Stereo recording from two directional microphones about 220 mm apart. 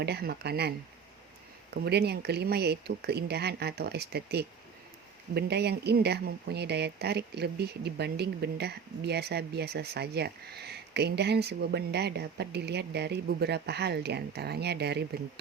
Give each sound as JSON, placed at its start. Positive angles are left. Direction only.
{"t": 0.0, "sound": "speech", "side_deg": -45}
{"t": 1.8, "sound": "speech", "side_deg": -50}